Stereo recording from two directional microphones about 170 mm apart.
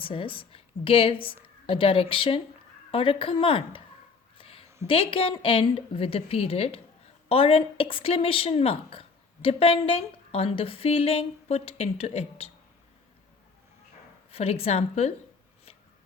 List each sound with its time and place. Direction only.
0.0 s a woman's voice: 30° left (ahead or behind)
4.4 s a sound: 35° left (ahead or behind)
4.9 s a woman's voice: 30° left (ahead or behind)
14.3 s a woman's voice: 35° left (ahead or behind)